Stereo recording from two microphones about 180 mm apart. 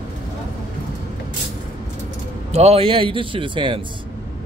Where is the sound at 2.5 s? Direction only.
35° right (ahead or behind).